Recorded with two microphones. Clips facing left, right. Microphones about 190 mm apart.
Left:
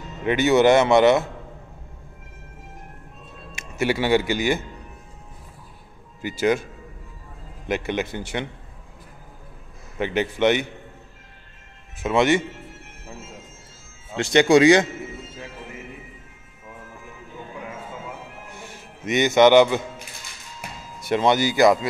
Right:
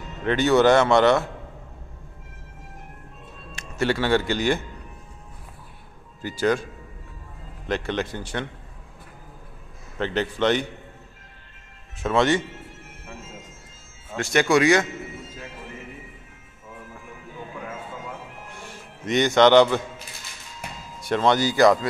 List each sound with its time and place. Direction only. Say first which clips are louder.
0.2 s speech: left 1 dB; 10° left (ahead or behind)
3.7 s speech: left 1 dB; 10° left (ahead or behind)
6.2 s speech: left 1 dB; 10° left (ahead or behind)
7.6 s speech: left 1 dB; 10° left (ahead or behind)
9.9 s speech: left 2 dB; 10° left (ahead or behind)
12.0 s speech: left 2 dB; 15° left (ahead or behind)
14.1 s speech: left 4 dB; 20° left (ahead or behind)
19.0 s speech: left 1 dB; 5° left (ahead or behind)
21.1 s speech: left 1 dB; 10° left (ahead or behind)